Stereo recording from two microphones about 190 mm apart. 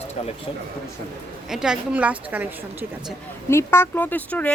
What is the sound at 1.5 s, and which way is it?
A woman's voice, 5° right (ahead or behind).